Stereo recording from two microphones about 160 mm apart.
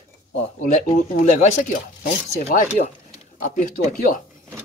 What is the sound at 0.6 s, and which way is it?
Speech, 50° left (ahead or behind).